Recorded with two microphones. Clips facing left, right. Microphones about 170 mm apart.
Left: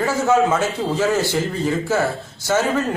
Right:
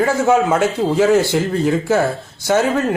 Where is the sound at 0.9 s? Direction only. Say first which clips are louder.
Right 6 dB; 15° right (ahead or behind).